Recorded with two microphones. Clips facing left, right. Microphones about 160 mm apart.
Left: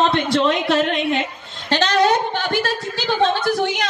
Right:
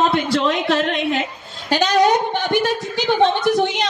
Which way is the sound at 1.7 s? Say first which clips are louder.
Right 1 dB; 10° right (ahead or behind).